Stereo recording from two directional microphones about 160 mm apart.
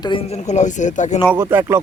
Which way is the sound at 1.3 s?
20° right (ahead or behind).